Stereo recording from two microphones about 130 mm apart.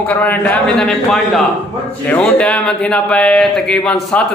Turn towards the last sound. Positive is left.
turn(degrees=5)  # may be behind; listen again after turning